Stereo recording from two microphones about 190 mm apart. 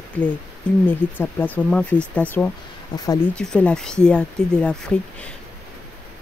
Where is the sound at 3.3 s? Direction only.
5° left (ahead or behind).